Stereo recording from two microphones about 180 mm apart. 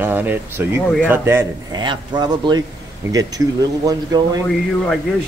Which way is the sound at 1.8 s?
25° right (ahead or behind).